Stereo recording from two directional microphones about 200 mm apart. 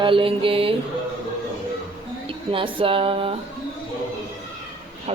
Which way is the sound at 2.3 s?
25° right (ahead or behind).